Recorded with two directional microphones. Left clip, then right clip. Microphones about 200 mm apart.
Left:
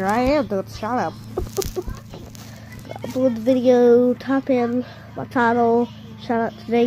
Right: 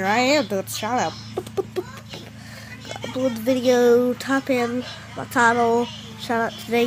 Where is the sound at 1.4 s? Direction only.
25° right (ahead or behind).